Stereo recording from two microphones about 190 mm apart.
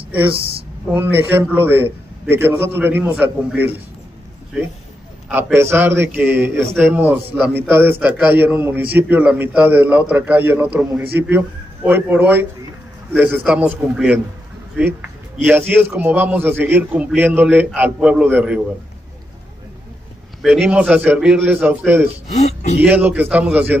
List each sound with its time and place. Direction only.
0.9 s a man's voice: 10° right (ahead or behind)
5.3 s a man's voice: 10° right (ahead or behind)
20.4 s a man's voice: 5° right (ahead or behind)
22.3 s speech: 35° left (ahead or behind)
22.8 s a man's voice: 10° right (ahead or behind)